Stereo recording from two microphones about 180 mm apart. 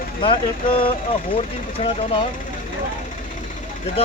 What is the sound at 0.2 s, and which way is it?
Speech, 30° left (ahead or behind).